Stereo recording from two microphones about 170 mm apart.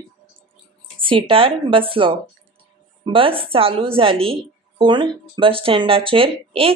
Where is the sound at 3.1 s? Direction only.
30° right (ahead or behind).